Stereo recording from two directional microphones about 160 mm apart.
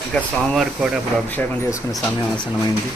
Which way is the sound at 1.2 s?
15° left (ahead or behind).